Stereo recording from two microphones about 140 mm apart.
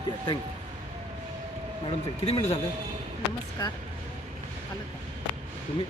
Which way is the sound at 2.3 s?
50° left (ahead or behind).